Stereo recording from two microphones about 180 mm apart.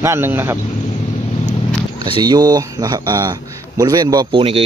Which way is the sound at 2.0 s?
25° right (ahead or behind).